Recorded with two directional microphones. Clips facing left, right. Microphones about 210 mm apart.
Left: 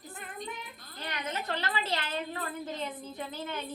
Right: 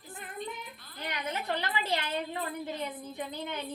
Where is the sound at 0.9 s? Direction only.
15° right (ahead or behind).